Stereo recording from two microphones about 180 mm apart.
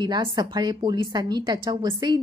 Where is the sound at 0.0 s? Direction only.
25° right (ahead or behind).